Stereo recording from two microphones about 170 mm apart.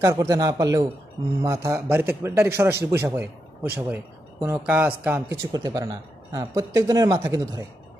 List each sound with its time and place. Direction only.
0.0 s a woman's voice: 20° right (ahead or behind)